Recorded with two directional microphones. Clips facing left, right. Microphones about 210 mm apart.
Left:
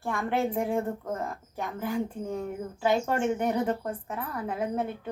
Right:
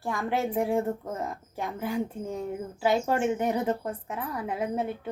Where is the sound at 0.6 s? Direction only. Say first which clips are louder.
Right 2 dB; 15° right (ahead or behind).